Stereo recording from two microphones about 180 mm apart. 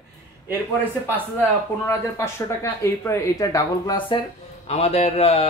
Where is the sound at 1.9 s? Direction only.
15° left (ahead or behind).